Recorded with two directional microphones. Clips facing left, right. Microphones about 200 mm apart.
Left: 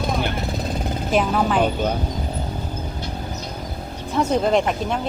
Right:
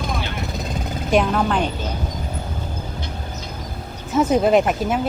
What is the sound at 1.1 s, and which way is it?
Speech, 5° left (ahead or behind).